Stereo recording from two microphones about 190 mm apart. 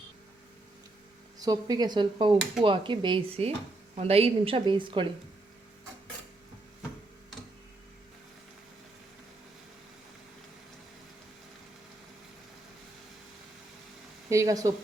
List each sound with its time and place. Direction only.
1.4 s a woman's voice: 20° right (ahead or behind)
14.3 s speech: 15° right (ahead or behind)